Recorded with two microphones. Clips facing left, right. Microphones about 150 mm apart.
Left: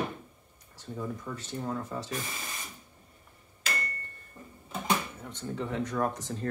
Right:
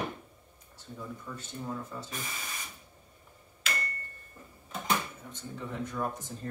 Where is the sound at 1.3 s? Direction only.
90° left.